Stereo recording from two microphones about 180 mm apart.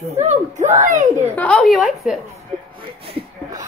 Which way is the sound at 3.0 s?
30° right (ahead or behind).